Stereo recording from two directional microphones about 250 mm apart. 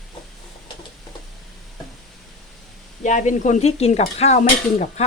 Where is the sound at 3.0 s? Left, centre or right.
Left.